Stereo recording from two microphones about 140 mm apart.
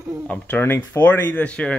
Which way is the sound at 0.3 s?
15° left (ahead or behind).